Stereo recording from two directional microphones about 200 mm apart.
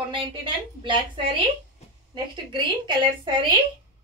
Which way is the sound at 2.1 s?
25° right (ahead or behind).